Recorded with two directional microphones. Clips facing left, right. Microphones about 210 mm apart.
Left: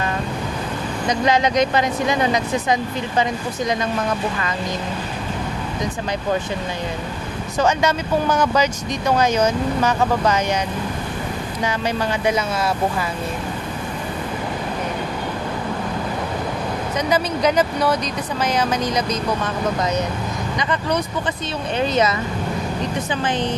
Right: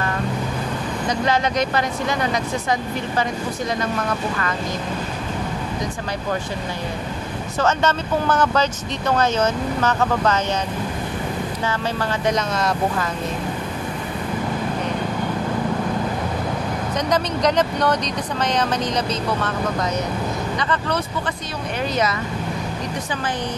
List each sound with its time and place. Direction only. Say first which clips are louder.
1.0 s speech: left 3 dB; 15° left (ahead or behind)
7.5 s speech: left 1 dB; 10° left (ahead or behind)
11.6 s speech: left 4 dB; 10° left (ahead or behind)
17.1 s speech: left 1 dB; 5° left (ahead or behind)
20.5 s speech: left 4 dB; 15° left (ahead or behind)